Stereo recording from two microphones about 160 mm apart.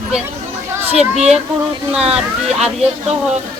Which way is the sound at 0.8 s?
45° right (ahead or behind).